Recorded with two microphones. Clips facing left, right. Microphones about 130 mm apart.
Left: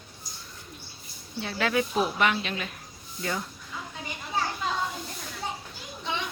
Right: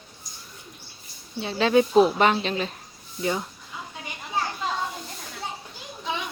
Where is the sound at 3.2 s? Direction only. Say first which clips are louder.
Right 5 dB; 20° right (ahead or behind).